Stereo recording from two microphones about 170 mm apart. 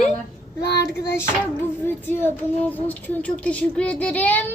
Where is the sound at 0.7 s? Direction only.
70° left (ahead or behind).